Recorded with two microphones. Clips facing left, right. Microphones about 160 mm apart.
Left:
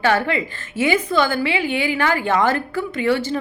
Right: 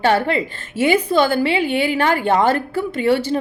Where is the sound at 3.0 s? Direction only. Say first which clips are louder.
Right 3 dB; 40° right (ahead or behind).